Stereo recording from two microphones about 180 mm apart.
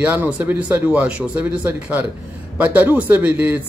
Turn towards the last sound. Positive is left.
turn(degrees=-10)  # may be behind; listen again after turning